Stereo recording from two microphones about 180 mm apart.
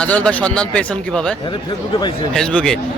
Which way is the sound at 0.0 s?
5° left (ahead or behind).